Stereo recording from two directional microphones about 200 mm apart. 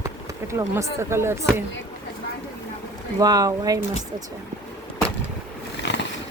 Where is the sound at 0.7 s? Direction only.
15° right (ahead or behind).